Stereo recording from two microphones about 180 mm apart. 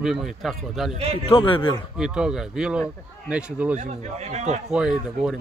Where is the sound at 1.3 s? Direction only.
30° left (ahead or behind).